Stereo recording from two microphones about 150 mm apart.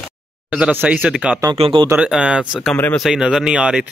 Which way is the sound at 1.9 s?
5° right (ahead or behind).